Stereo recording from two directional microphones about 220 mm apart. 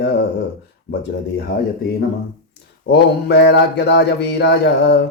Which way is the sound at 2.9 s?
50° left (ahead or behind).